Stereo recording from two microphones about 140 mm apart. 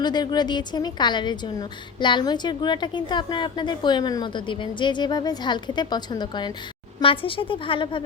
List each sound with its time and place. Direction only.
0.0 s a woman's voice: 30° left (ahead or behind)